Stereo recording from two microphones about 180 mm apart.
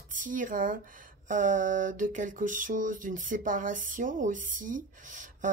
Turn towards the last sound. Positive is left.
turn(degrees=-45)  # may be behind; listen again after turning